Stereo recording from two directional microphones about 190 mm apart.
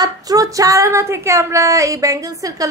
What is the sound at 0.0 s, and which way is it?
Speech, 20° right (ahead or behind).